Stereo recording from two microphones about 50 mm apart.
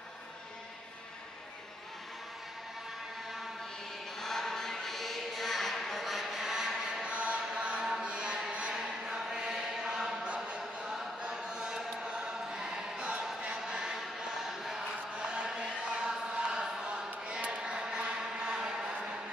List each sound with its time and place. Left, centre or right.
4.2 s chant: centre
7.2 s chant: right
8.7 s chant: centre
10.2 s chant: right
10.9 s chant: centre
15.1 s a sound: centre